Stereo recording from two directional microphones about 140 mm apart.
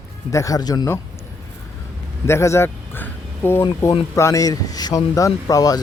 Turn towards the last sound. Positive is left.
turn(degrees=25)  # may be behind; listen again after turning